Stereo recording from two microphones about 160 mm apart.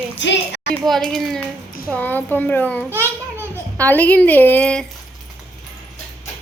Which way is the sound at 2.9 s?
15° right (ahead or behind).